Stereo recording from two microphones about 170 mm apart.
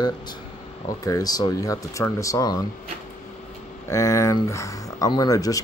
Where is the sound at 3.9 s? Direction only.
20° left (ahead or behind).